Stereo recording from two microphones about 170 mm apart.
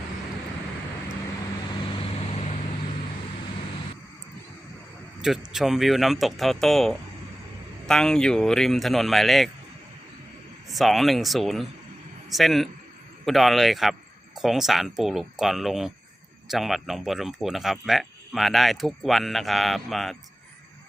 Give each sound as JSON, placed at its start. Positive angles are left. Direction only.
{"t": 1.8, "sound": "vehicle", "side_deg": 30}
{"t": 5.5, "sound": "speech", "side_deg": 0}
{"t": 10.7, "sound": "speech", "side_deg": 0}